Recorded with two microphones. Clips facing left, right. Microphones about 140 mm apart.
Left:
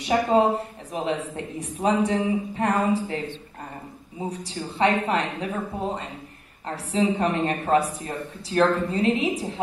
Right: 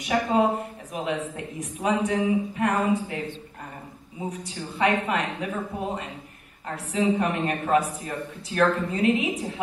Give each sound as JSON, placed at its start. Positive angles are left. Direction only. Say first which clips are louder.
{"t": 0.0, "sound": "a man's voice", "louder": "left 2 dB", "side_deg": 30}
{"t": 6.7, "sound": "a man's voice", "louder": "left 1 dB", "side_deg": 30}